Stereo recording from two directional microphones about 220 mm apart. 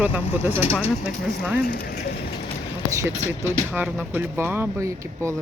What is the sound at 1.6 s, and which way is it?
Speech, 40° left (ahead or behind).